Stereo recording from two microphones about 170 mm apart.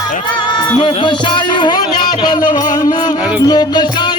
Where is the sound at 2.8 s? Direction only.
20° left (ahead or behind).